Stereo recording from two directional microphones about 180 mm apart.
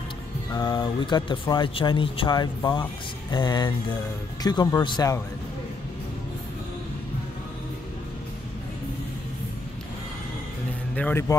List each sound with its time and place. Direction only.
0.5 s speech: 20° left (ahead or behind)
11.0 s speech: 10° left (ahead or behind)